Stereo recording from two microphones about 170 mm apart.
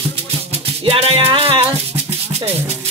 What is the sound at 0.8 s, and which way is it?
Music, 35° right (ahead or behind).